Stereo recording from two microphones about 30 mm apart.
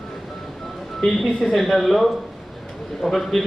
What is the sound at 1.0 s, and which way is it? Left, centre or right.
A man's voice, centre.